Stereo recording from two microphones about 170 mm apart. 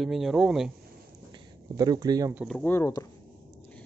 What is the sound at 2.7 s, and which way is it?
Speech, 20° left (ahead or behind).